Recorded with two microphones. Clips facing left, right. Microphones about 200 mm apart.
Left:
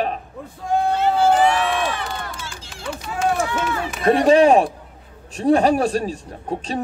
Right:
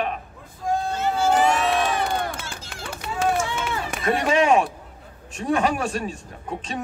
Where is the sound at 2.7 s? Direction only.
60° right (ahead or behind).